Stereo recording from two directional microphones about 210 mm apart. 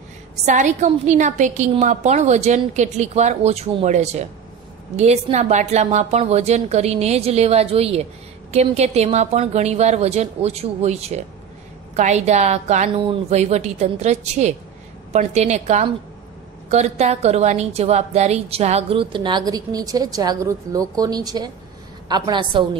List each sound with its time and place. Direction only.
0.5 s a woman's voice: 35° right (ahead or behind)